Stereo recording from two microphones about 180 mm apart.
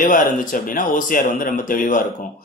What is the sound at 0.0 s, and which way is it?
Speech, 50° left (ahead or behind).